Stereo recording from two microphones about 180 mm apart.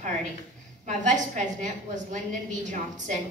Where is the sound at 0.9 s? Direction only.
45° right (ahead or behind).